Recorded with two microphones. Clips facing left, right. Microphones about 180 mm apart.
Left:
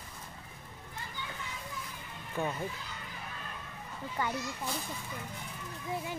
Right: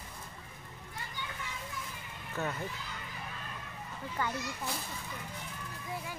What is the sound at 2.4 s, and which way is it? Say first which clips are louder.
Speech: left 2 dB; 15° left (ahead or behind).